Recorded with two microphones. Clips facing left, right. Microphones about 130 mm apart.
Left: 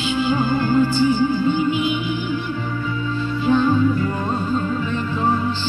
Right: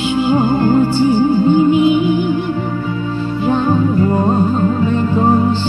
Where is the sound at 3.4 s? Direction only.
50° right (ahead or behind).